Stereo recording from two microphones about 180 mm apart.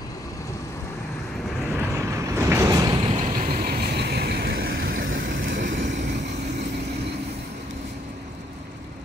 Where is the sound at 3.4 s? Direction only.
55° right (ahead or behind); by 4.9 s 75° right (ahead or behind).